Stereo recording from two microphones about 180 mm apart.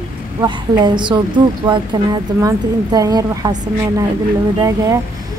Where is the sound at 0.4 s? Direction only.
25° right (ahead or behind).